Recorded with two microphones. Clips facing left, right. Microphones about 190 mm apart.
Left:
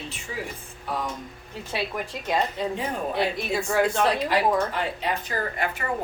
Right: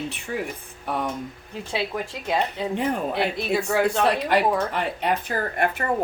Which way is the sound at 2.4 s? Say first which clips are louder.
Right 2 dB; 65° right (ahead or behind).